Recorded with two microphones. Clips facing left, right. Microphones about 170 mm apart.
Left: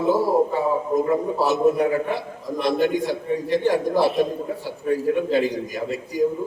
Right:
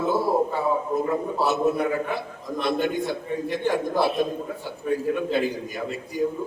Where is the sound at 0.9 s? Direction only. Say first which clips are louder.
Left 4 dB; 10° left (ahead or behind).